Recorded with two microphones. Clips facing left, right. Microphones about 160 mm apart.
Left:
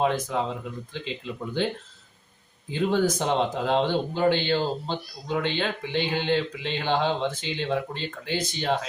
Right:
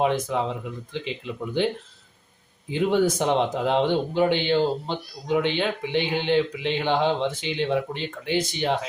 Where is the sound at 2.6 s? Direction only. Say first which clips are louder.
Right 2 dB; 15° right (ahead or behind).